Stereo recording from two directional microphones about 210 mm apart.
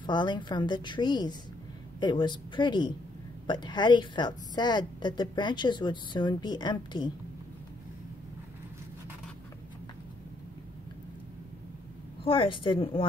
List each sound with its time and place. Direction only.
0.0 s a woman's voice: 20° left (ahead or behind)
12.3 s a woman's voice: 25° left (ahead or behind)